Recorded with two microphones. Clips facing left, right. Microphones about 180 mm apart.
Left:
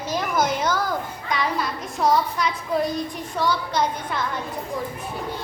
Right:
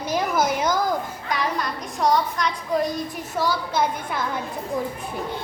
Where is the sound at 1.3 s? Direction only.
Centre (ahead or behind).